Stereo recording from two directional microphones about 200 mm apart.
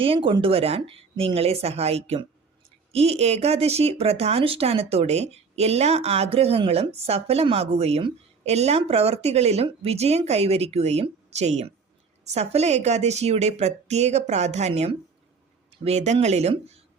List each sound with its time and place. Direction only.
0.0 s speech: 25° right (ahead or behind)